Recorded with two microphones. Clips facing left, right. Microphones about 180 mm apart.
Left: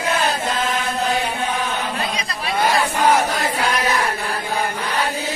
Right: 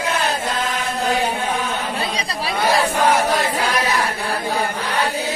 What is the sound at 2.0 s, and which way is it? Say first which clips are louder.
Chatter: right 1 dB; 35° right (ahead or behind).